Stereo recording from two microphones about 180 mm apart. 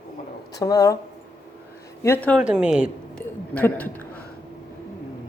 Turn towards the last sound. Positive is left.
turn(degrees=10)  # may be behind; listen again after turning